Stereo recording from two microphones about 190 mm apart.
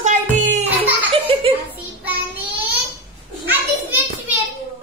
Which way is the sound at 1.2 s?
30° right (ahead or behind).